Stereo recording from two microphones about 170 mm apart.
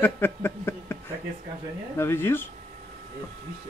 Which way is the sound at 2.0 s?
15° left (ahead or behind).